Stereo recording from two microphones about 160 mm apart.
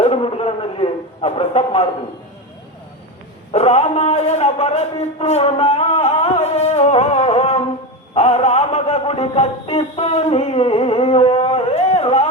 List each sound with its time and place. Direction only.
0.0 s a sound: 35° left (ahead or behind)
3.5 s a man's voice: 40° left (ahead or behind)
8.1 s music: 40° left (ahead or behind)